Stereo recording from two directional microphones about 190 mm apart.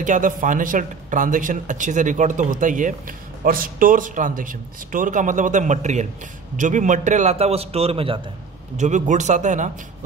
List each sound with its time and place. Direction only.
0.0 s a man's voice: 40° right (ahead or behind)
8.7 s a man's voice: 40° right (ahead or behind)